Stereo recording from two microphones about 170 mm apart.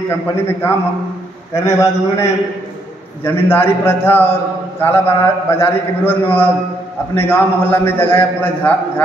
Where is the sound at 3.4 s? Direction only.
15° left (ahead or behind).